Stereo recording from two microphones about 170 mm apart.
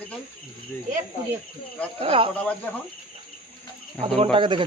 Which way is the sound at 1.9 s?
35° right (ahead or behind).